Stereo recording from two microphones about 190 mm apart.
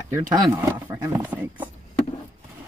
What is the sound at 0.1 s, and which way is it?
Speech, 15° right (ahead or behind).